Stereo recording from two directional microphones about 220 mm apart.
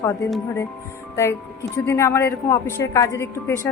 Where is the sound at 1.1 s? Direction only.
15° left (ahead or behind).